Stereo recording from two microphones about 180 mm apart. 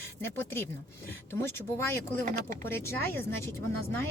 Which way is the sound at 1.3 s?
15° left (ahead or behind).